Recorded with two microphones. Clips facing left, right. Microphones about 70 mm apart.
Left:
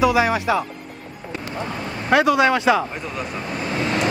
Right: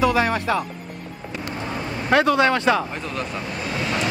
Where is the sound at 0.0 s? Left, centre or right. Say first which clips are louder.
Left 2 dB; centre.